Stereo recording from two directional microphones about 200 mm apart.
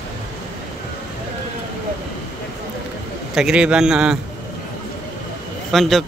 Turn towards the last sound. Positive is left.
turn(degrees=0)  # may be behind; listen again after turning